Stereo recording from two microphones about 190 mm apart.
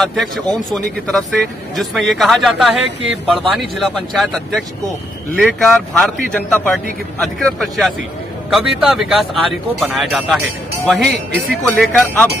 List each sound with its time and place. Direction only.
0.0 s a man's voice: centre (ahead or behind)